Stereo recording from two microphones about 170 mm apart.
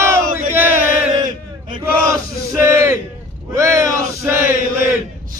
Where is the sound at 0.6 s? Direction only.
55° left (ahead or behind).